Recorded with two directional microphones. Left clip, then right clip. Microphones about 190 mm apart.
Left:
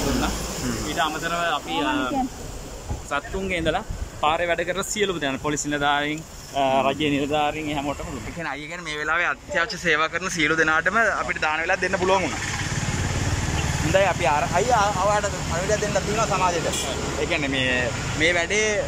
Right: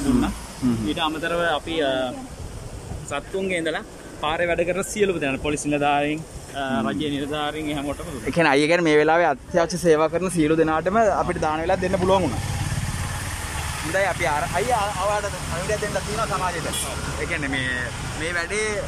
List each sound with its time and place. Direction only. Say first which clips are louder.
0.8 s speech: left 2 dB; 20° right (ahead or behind)
3.1 s speech: right 1 dB; centre (ahead or behind)
6.5 s speech: left 5 dB; 10° left (ahead or behind)
8.4 s speech: right 15 dB; 55° right (ahead or behind); by 12.3 s 15° right (ahead or behind)
13.9 s speech: left 2 dB; 5° left (ahead or behind)